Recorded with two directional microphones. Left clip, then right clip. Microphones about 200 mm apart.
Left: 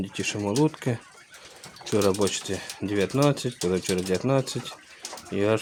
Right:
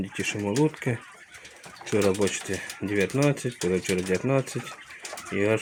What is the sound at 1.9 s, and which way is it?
Speech, 15° left (ahead or behind).